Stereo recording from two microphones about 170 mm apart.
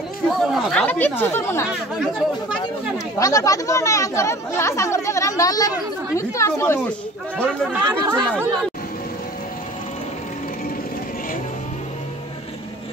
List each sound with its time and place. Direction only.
0.4 s speech: centre (ahead or behind)
3.2 s speech: 20° left (ahead or behind)
7.8 s speech: 25° right (ahead or behind)